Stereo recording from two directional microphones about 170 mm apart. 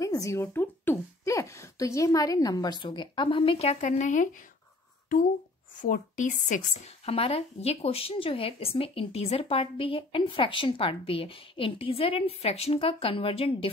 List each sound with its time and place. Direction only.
0.0 s speech: 20° left (ahead or behind); by 4.3 s 45° left (ahead or behind)
5.8 s speech: 50° left (ahead or behind)